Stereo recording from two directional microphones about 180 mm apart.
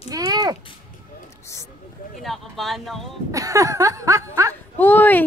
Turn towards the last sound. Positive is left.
turn(degrees=10)  # may be behind; listen again after turning